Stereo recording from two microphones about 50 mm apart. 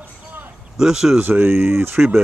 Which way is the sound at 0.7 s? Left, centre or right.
Centre.